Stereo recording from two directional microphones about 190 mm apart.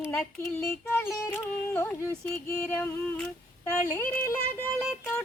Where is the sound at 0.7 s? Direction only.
10° left (ahead or behind).